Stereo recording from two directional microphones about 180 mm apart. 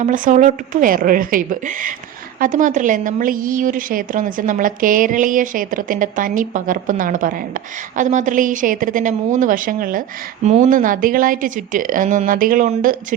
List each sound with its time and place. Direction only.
0.0 s a woman's voice: 45° right (ahead or behind)